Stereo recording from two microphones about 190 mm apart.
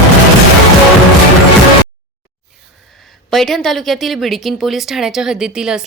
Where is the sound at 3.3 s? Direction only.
Centre (ahead or behind).